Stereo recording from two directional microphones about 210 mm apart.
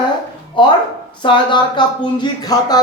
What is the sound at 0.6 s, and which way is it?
Speech, 25° left (ahead or behind).